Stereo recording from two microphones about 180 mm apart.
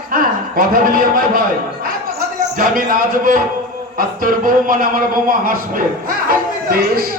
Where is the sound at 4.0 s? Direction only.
50° right (ahead or behind).